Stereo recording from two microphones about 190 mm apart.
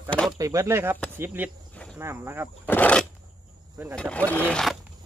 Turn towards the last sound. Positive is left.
turn(degrees=5)  # may be behind; listen again after turning